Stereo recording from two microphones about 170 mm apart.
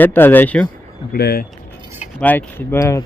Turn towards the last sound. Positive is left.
turn(degrees=20)  # may be behind; listen again after turning